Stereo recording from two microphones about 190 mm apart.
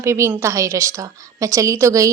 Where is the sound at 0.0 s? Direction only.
15° right (ahead or behind).